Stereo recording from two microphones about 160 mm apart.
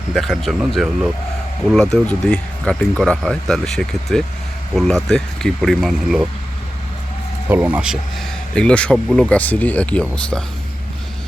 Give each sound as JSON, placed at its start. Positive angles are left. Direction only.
{"t": 0.1, "sound": "speech", "side_deg": 0}
{"t": 7.4, "sound": "speech", "side_deg": -10}
{"t": 8.5, "sound": "speech", "side_deg": 5}